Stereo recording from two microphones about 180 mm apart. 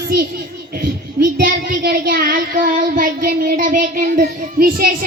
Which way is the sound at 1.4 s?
55° right (ahead or behind).